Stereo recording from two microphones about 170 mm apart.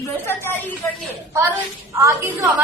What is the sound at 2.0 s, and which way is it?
Speech, 15° right (ahead or behind).